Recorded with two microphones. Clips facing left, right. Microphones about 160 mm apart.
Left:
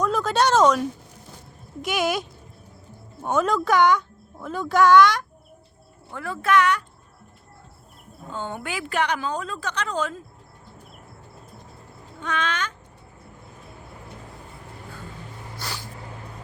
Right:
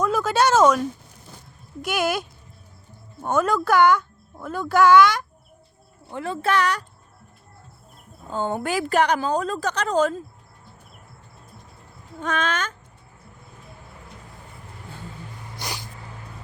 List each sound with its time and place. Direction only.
0.0 s speech: 5° right (ahead or behind)
3.2 s speech: centre (ahead or behind)
6.1 s a woman's voice: 20° right (ahead or behind)
8.3 s a woman's voice: 35° right (ahead or behind)
12.2 s speech: 45° right (ahead or behind)
15.5 s a sound: 15° right (ahead or behind)